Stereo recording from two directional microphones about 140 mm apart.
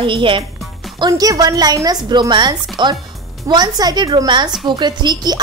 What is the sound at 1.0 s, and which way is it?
A woman's voice, 25° right (ahead or behind).